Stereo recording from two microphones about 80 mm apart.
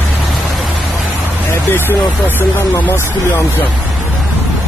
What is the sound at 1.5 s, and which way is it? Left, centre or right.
Vehicle, left.